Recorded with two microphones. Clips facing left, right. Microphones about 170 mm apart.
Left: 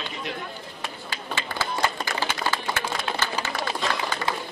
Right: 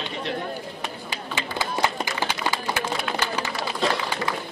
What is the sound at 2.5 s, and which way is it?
Run, 15° right (ahead or behind).